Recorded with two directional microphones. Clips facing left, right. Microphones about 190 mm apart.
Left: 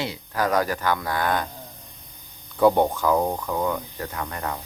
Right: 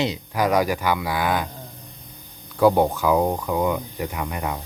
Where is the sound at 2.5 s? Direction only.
5° right (ahead or behind).